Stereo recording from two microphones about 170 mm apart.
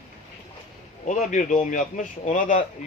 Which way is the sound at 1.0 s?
45° left (ahead or behind).